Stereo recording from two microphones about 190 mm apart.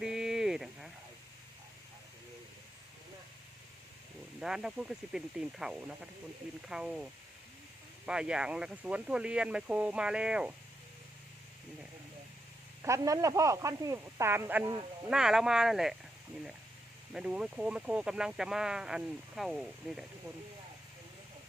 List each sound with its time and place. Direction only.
0.0 s a sound: 5° right (ahead or behind)
4.4 s speech: 5° right (ahead or behind)
12.8 s speech: 15° right (ahead or behind)
15.1 s speech: 5° right (ahead or behind)
17.1 s speech: 5° right (ahead or behind)